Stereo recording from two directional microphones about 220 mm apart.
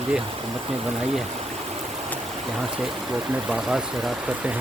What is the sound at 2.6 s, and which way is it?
Speech, centre (ahead or behind).